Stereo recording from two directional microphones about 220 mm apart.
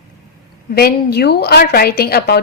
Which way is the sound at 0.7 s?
45° left (ahead or behind).